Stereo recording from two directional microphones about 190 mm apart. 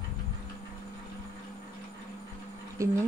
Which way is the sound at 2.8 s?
15° right (ahead or behind).